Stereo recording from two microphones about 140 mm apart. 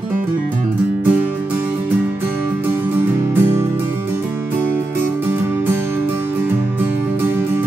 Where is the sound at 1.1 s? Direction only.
10° right (ahead or behind).